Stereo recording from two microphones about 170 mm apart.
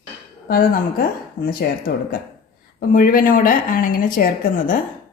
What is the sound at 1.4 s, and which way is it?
A woman's voice, 60° left (ahead or behind).